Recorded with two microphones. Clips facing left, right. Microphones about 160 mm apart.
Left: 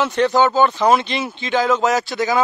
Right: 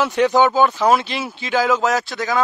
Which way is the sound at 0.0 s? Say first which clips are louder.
Right 1 dB; 5° right (ahead or behind).